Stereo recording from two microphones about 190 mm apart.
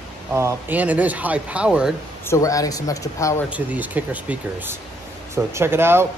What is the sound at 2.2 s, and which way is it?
Speech, 15° left (ahead or behind).